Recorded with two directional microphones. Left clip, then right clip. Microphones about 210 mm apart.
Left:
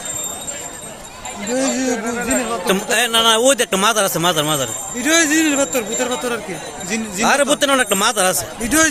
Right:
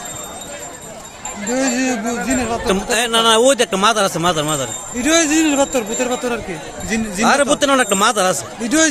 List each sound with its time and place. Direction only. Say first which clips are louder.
1.5 s speech: right 1 dB; 35° right (ahead or behind)
2.2 s speech: right 1 dB; 50° right (ahead or behind)
2.6 s a man's voice: left 1 dB; 5° right (ahead or behind)
4.9 s speech: even; 35° right (ahead or behind)
7.2 s a man's voice: right 1 dB; centre (ahead or behind)
8.6 s speech: even; 20° right (ahead or behind)